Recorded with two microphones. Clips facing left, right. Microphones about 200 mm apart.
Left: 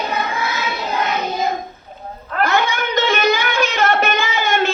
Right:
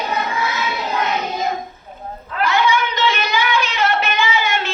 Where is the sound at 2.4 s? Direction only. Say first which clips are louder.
Right 1 dB; 45° left (ahead or behind).